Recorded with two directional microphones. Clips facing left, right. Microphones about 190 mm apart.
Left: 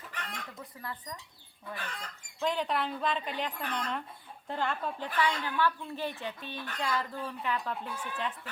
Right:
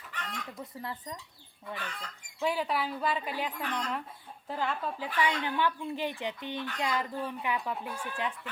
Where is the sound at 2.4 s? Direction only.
5° right (ahead or behind).